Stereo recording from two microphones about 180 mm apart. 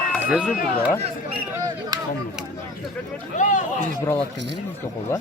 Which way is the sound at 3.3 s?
45° left (ahead or behind).